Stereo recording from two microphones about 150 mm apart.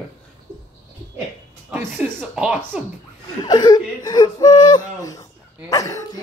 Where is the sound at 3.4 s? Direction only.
25° left (ahead or behind).